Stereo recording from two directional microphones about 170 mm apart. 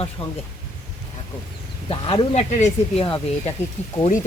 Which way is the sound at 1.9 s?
35° left (ahead or behind).